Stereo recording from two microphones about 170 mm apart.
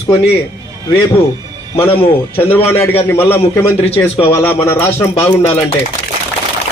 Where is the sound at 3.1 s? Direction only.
10° left (ahead or behind).